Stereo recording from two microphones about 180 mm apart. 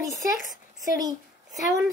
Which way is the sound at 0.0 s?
20° right (ahead or behind).